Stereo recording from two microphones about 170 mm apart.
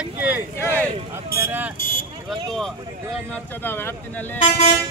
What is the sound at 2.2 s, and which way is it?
Speech, 5° left (ahead or behind).